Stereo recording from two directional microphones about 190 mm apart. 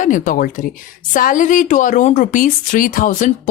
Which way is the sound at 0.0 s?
45° left (ahead or behind).